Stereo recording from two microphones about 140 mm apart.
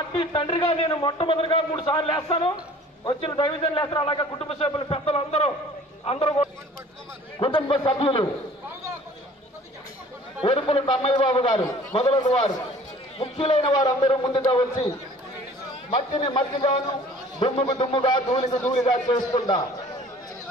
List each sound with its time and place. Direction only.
0.2 s a man's voice: 40° left (ahead or behind)
7.3 s a man's voice: 35° left (ahead or behind)
10.4 s a man's voice: 35° left (ahead or behind)
15.9 s a man's voice: 35° left (ahead or behind)